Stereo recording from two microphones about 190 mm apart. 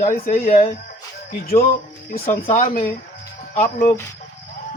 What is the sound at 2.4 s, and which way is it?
Speech, 35° left (ahead or behind).